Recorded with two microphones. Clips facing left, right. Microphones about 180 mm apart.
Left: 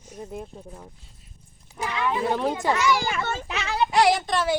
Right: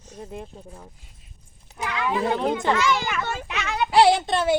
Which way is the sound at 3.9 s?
30° right (ahead or behind).